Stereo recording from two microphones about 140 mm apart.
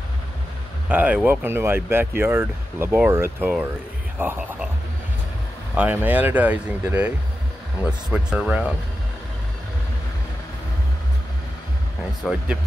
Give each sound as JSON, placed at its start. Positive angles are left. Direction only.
{"t": 0.8, "sound": "speech", "side_deg": -10}
{"t": 5.8, "sound": "speech", "side_deg": -10}
{"t": 12.2, "sound": "speech", "side_deg": 0}